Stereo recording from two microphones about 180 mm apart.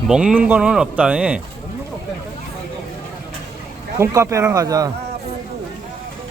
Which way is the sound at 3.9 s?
15° right (ahead or behind).